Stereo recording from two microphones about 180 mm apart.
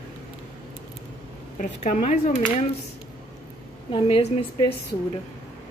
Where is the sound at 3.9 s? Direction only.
30° left (ahead or behind).